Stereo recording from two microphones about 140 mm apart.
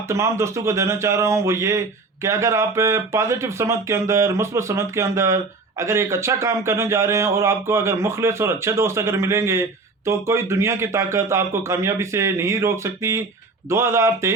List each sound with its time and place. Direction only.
0.1 s a man's voice: 20° right (ahead or behind)